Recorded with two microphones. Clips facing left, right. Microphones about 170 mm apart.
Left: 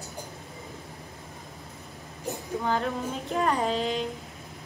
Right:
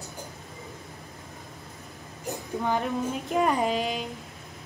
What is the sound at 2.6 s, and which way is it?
Female singing, 15° right (ahead or behind).